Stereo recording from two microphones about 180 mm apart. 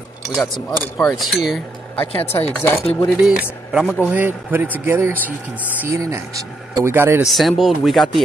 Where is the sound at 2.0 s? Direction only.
35° left (ahead or behind).